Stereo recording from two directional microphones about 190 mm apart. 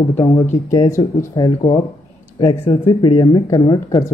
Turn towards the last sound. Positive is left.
turn(degrees=20)  # may be behind; listen again after turning